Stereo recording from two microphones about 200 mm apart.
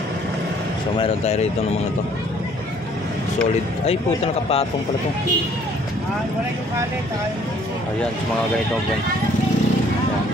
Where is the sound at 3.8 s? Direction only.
30° left (ahead or behind).